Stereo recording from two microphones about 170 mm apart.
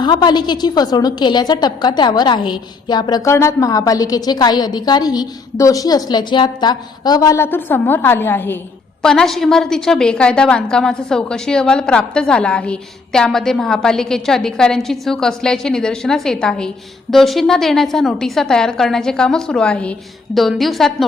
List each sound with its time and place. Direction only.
0.0 s a woman's voice: 25° left (ahead or behind); by 20.9 s centre (ahead or behind)